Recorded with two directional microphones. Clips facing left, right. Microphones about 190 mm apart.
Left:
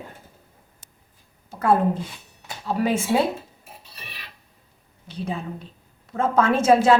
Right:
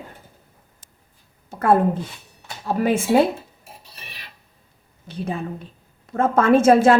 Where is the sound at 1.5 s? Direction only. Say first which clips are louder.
Right 2 dB; 50° right (ahead or behind).